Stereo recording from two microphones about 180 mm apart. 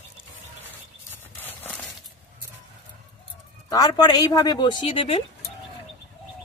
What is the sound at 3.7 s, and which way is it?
Speech, 20° left (ahead or behind).